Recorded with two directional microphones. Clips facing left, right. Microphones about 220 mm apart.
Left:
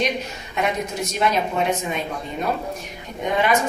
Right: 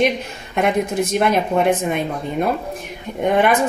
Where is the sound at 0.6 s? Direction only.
55° right (ahead or behind).